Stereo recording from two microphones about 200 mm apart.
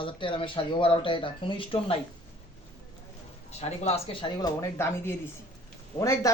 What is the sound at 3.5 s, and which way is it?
A woman's voice, 30° left (ahead or behind).